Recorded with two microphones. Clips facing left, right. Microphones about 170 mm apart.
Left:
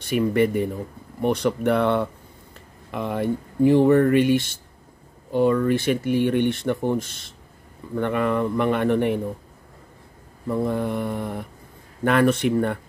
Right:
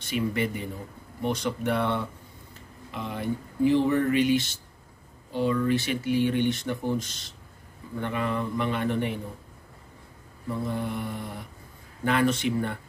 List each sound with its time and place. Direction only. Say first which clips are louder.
0.1 s speech: left 8 dB; 55° left (ahead or behind)
10.5 s mantra: left 7 dB; 55° left (ahead or behind)
12.0 s speech: left 5 dB; 55° left (ahead or behind)